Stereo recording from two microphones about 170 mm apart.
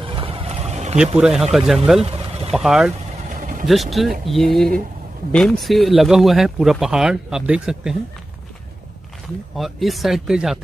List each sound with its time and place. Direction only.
0.0 s a sound: 30° right (ahead or behind)
0.9 s speech: 5° right (ahead or behind)
3.3 s vehicle: 50° right (ahead or behind)
3.6 s speech: centre (ahead or behind)
9.6 s speech: centre (ahead or behind)